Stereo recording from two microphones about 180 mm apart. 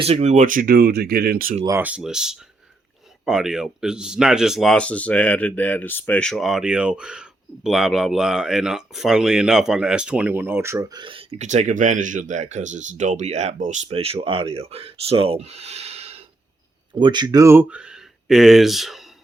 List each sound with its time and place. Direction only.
0.0 s speech: 35° right (ahead or behind); by 1.5 s 55° right (ahead or behind)
1.6 s speech: 10° right (ahead or behind)